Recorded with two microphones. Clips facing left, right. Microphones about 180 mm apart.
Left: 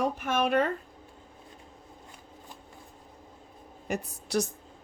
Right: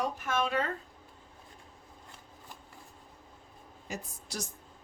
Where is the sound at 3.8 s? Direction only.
60° left (ahead or behind).